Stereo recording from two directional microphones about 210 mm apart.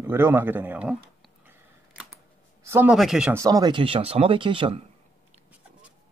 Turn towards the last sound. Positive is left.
turn(degrees=-5)  # may be behind; listen again after turning